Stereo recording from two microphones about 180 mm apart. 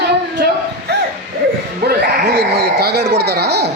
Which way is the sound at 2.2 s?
65° right (ahead or behind).